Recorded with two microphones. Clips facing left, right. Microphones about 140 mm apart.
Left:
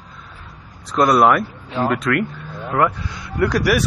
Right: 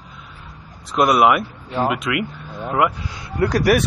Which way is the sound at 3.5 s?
40° right (ahead or behind).